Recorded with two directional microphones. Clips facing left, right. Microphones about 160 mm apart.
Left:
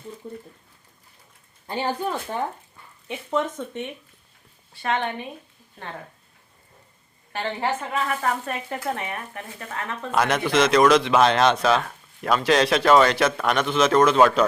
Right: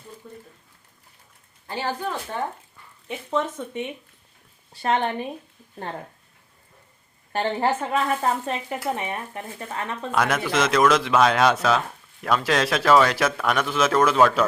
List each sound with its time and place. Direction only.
0.2 s speech: 30° left (ahead or behind)
1.6 s speech: 15° left (ahead or behind)
3.1 s a man's voice: centre (ahead or behind)
4.7 s speech: 35° right (ahead or behind)
7.3 s speech: 35° right (ahead or behind)
8.7 s a man's voice: 10° right (ahead or behind)
9.0 s speech: 25° right (ahead or behind)
10.1 s a man's voice: centre (ahead or behind)